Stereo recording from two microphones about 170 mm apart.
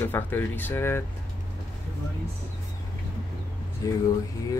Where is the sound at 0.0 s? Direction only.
10° left (ahead or behind).